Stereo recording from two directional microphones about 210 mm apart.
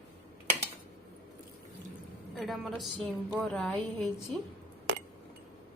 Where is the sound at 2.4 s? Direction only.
Centre (ahead or behind).